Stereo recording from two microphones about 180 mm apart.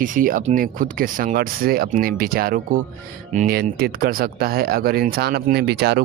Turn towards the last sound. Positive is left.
turn(degrees=-65)  # may be behind; listen again after turning